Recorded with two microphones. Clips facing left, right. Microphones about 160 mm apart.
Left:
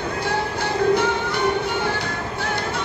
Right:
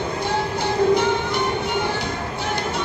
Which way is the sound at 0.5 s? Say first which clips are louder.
Right 2 dB; 15° right (ahead or behind).